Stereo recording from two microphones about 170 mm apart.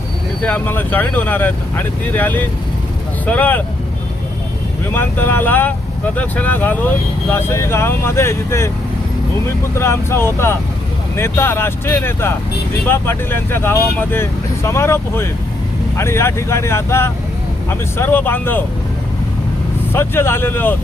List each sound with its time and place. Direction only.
0.4 s speech: 10° left (ahead or behind)
4.9 s speech: 10° left (ahead or behind)
9.7 s speech: 15° left (ahead or behind)
19.9 s speech: 15° left (ahead or behind)